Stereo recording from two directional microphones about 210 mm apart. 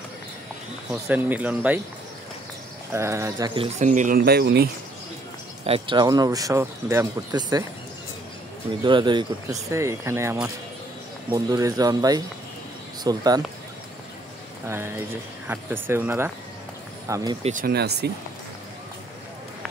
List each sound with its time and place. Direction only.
1.0 s speech: 10° right (ahead or behind)
2.9 s speech: 15° right (ahead or behind)
3.8 s speech: 35° right (ahead or behind)
5.7 s speech: 20° right (ahead or behind)
8.8 s speech: 20° right (ahead or behind)
14.7 s speech: 10° right (ahead or behind)
17.4 s speech: 35° right (ahead or behind)